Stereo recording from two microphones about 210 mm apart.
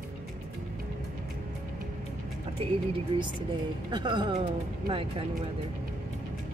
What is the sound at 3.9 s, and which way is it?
Speech, 20° right (ahead or behind).